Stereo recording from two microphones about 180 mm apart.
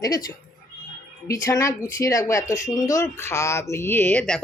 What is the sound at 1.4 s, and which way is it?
Speech, 15° left (ahead or behind).